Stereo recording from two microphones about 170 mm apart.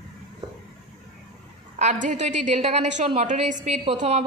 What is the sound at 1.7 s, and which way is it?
A woman's voice, 45° right (ahead or behind).